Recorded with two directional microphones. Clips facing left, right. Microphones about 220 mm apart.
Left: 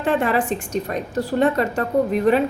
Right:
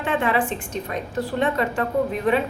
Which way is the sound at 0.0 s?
40° left (ahead or behind).